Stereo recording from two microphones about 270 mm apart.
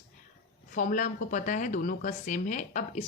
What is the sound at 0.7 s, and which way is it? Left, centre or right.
Speech, left.